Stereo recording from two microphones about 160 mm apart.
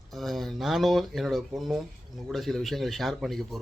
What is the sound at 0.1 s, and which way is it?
Speech, centre (ahead or behind).